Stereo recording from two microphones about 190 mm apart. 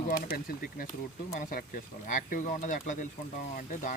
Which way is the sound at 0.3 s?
50° left (ahead or behind).